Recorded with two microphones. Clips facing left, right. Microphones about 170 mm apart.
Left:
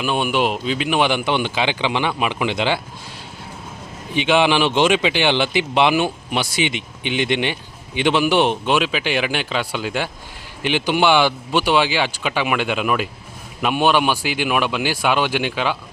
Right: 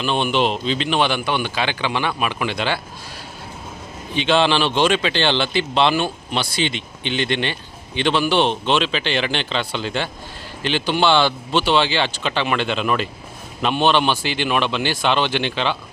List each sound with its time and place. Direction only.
0.0 s speech: 10° left (ahead or behind)
4.1 s speech: 15° left (ahead or behind)